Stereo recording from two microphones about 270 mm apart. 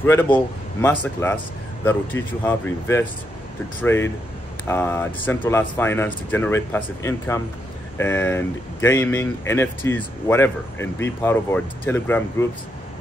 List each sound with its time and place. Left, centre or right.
0.0 s speech: centre